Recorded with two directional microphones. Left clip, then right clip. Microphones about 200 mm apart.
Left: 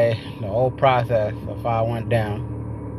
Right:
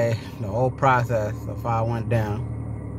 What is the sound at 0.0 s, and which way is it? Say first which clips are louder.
Speech: left 5 dB; 20° right (ahead or behind).